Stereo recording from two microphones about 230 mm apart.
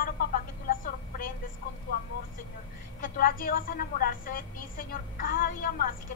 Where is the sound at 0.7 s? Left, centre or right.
Left.